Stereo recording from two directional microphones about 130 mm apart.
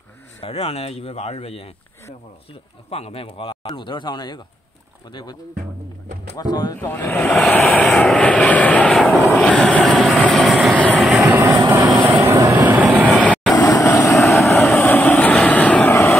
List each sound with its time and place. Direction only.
0.4 s speech: 50° left (ahead or behind)
2.9 s speech: 50° left (ahead or behind); by 6.8 s 30° left (ahead or behind)
6.8 s vehicle: 20° left (ahead or behind); by 11.2 s 5° right (ahead or behind)
11.2 s vehicle: 20° right (ahead or behind)
12.7 s vehicle: 10° right (ahead or behind)
13.2 s vehicle: 10° left (ahead or behind)
13.6 s vehicle: 25° left (ahead or behind)
14.2 s vehicle: centre (ahead or behind)
14.5 s vehicle: 15° left (ahead or behind)